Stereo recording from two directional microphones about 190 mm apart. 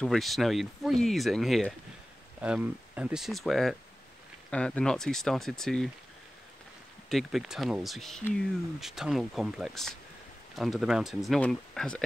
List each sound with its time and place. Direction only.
0.0 s speech: centre (ahead or behind)
7.1 s speech: centre (ahead or behind)